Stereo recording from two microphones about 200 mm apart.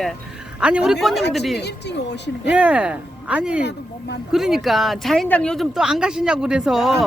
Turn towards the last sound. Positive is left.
turn(degrees=0)  # may be behind; listen again after turning